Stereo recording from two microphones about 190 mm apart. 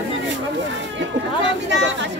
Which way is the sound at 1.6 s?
70° right (ahead or behind).